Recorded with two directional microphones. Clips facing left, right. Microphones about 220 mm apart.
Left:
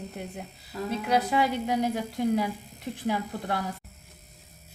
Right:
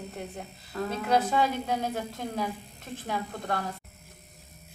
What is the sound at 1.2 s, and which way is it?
Speech, 15° left (ahead or behind).